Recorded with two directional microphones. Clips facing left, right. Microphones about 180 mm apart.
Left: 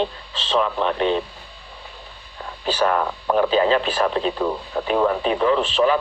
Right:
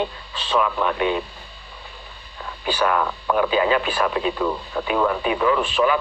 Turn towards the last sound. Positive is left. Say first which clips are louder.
# left 1 dB
turn(degrees=30)  # may be behind; listen again after turning